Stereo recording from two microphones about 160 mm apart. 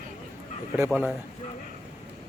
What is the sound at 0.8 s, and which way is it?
Speech, 10° right (ahead or behind).